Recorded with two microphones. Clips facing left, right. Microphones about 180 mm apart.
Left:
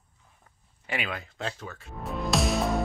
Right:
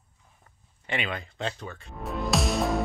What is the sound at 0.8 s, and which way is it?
Music, 5° left (ahead or behind).